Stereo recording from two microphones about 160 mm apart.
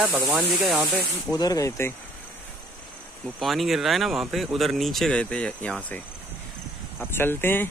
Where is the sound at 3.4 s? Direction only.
Centre (ahead or behind).